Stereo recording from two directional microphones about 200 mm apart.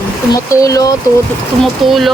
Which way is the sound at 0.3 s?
15° left (ahead or behind).